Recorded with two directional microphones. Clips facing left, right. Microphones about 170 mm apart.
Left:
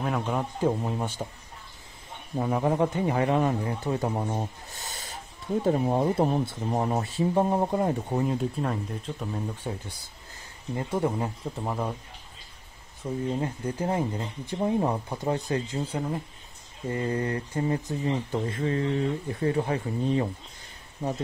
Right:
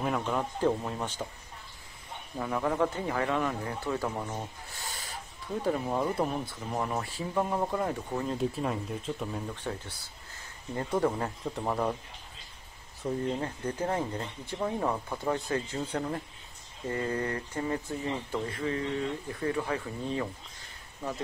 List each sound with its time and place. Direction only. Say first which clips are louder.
0.2 s speech: left 2 dB; 10° left (ahead or behind)
2.3 s speech: left 5 dB; 25° left (ahead or behind)
4.7 s snake: left 1 dB; 20° left (ahead or behind)
5.6 s speech: left 5 dB; 35° left (ahead or behind)
8.3 s speech: left 2 dB; centre (ahead or behind)
9.7 s speech: left 2 dB; 15° left (ahead or behind)
13.0 s speech: even; centre (ahead or behind)
13.4 s speech: left 3 dB; 15° left (ahead or behind)
16.9 s speech: left 3 dB; 25° left (ahead or behind)